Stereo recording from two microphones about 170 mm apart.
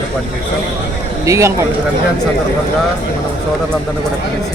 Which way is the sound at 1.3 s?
15° right (ahead or behind).